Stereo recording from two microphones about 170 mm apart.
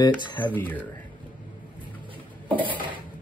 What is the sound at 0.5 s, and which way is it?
Speech, 10° left (ahead or behind).